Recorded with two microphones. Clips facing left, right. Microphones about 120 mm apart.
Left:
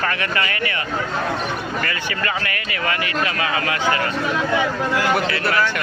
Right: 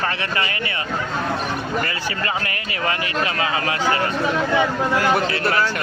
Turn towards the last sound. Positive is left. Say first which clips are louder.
# even
turn(degrees=-30)  # may be behind; listen again after turning